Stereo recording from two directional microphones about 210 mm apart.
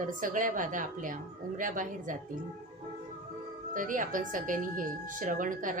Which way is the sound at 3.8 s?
40° right (ahead or behind).